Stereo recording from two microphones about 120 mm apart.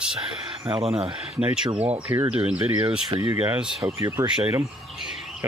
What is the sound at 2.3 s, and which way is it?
Speech, 10° right (ahead or behind).